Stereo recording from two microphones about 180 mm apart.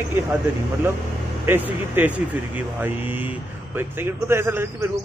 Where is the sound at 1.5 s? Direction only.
10° right (ahead or behind).